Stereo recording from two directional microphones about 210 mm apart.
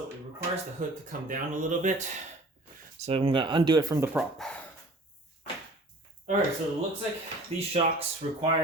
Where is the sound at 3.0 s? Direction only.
25° right (ahead or behind).